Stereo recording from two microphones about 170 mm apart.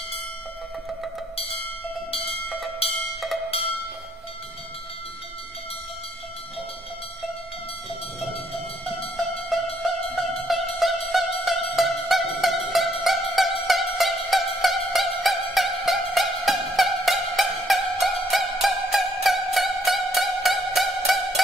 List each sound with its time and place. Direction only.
1.3 s music: 35° left (ahead or behind)
9.1 s music: centre (ahead or behind)